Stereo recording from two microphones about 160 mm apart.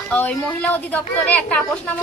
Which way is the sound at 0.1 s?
10° left (ahead or behind).